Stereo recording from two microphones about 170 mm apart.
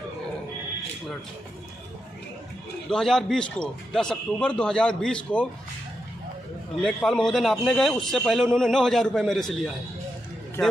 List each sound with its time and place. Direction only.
2.9 s a man's voice: centre (ahead or behind)
6.8 s a man's voice: 5° left (ahead or behind)